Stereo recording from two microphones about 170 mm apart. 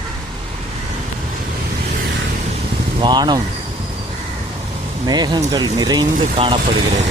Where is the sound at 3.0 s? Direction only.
25° right (ahead or behind).